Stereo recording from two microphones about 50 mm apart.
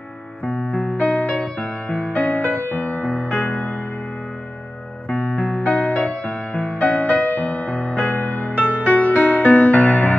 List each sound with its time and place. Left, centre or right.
0.5 s music: left
2.1 s music: left
5.1 s music: left